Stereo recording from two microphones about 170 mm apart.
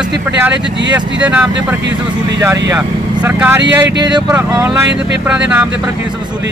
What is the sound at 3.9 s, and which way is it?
Speech, 25° right (ahead or behind).